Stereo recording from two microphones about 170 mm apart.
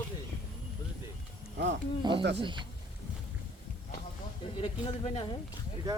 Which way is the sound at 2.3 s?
30° right (ahead or behind).